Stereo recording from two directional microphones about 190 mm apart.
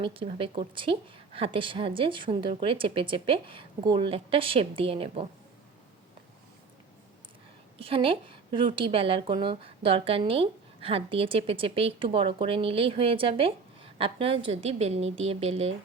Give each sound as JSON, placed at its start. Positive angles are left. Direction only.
{"t": 0.0, "sound": "a woman's voice", "side_deg": -30}
{"t": 7.8, "sound": "a woman's voice", "side_deg": -30}